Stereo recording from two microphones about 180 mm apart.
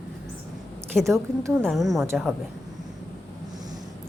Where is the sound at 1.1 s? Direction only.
15° right (ahead or behind).